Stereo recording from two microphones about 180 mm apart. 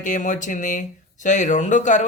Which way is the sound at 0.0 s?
45° left (ahead or behind).